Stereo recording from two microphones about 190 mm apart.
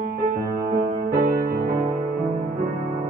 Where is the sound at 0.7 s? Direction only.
40° right (ahead or behind).